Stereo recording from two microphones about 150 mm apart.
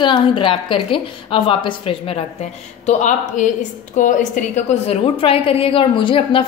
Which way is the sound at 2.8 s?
55° left (ahead or behind).